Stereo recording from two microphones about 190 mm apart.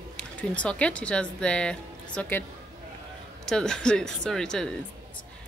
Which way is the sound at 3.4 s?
5° left (ahead or behind).